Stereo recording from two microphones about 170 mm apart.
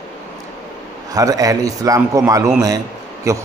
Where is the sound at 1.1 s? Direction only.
20° right (ahead or behind).